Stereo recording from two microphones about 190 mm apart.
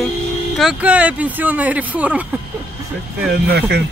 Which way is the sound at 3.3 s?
60° right (ahead or behind).